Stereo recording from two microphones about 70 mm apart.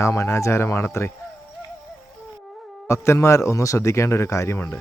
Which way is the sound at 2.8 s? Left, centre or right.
Left.